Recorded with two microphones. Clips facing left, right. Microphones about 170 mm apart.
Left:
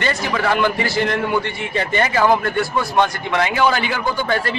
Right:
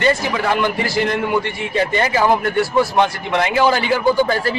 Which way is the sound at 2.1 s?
5° right (ahead or behind).